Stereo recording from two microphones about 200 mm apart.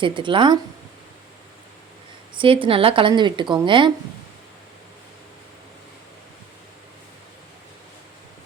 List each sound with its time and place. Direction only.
0.0 s speech: 25° right (ahead or behind)
2.4 s speech: 25° right (ahead or behind)